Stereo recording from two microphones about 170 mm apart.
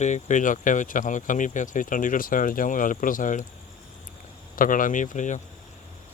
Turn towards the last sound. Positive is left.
turn(degrees=45)  # may be behind; listen again after turning